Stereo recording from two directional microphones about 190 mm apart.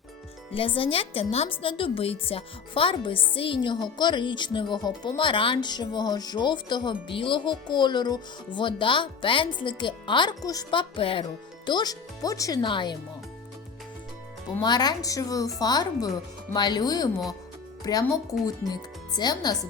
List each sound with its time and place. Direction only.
0.5 s speech: 30° left (ahead or behind)
14.6 s speech: 20° left (ahead or behind)